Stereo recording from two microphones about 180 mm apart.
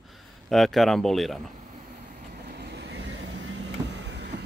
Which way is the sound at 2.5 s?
70° right (ahead or behind).